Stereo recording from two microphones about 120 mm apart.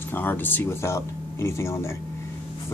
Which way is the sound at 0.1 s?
15° left (ahead or behind).